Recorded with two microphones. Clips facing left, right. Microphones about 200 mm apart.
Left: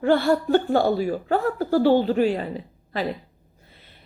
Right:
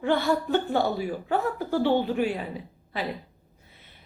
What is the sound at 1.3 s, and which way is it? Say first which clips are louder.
Speech: left 4 dB; 40° left (ahead or behind).